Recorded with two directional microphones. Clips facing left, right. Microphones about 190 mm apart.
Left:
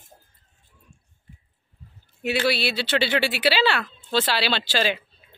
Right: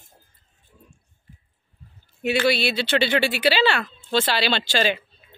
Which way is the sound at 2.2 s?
5° left (ahead or behind).